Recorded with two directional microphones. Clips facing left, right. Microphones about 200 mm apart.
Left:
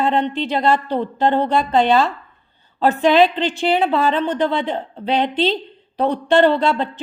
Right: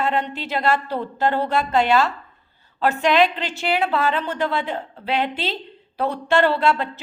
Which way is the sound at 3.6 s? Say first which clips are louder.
Left 3 dB; 30° left (ahead or behind).